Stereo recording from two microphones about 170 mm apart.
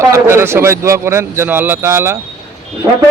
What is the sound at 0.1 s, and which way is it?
A man's voice, 15° right (ahead or behind).